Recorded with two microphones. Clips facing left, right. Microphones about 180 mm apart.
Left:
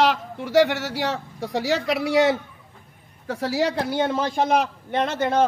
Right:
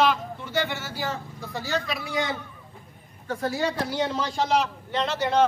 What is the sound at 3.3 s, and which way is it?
A man's voice, 85° left.